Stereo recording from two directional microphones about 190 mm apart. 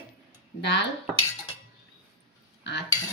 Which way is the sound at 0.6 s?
65° left (ahead or behind).